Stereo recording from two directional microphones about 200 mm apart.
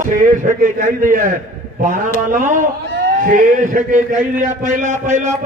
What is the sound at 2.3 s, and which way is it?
A man's voice, 40° right (ahead or behind).